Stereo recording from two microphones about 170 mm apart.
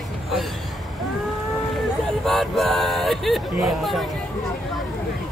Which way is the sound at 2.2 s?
Centre (ahead or behind).